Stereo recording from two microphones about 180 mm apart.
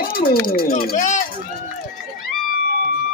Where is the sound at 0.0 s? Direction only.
55° left (ahead or behind).